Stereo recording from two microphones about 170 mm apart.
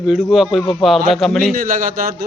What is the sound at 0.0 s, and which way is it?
A man's voice, centre (ahead or behind).